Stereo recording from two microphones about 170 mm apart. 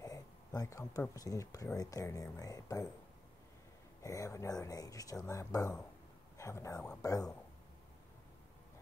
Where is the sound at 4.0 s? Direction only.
20° left (ahead or behind).